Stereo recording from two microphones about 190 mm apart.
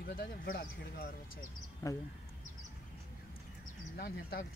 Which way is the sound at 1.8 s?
15° left (ahead or behind).